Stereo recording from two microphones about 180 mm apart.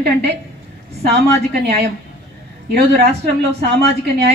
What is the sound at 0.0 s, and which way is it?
A woman's voice, 70° right (ahead or behind).